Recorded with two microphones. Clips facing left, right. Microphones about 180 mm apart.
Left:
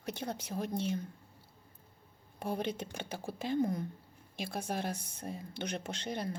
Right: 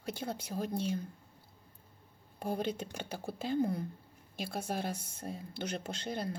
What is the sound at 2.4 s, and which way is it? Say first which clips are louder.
Speech: right 1 dB; centre (ahead or behind).